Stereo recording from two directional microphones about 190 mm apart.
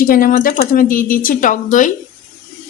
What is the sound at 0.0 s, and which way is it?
Speech, 45° left (ahead or behind).